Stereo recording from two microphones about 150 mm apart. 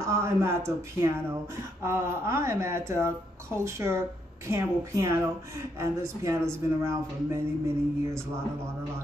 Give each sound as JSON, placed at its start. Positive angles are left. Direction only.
{"t": 0.0, "sound": "a woman's voice", "side_deg": -20}